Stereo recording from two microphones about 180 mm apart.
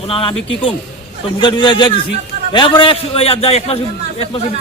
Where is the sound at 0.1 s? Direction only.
30° left (ahead or behind).